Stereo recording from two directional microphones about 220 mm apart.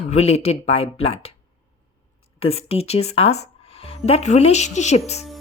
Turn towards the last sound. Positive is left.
turn(degrees=30)  # may be behind; listen again after turning